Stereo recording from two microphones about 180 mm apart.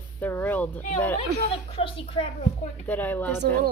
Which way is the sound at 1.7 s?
30° left (ahead or behind).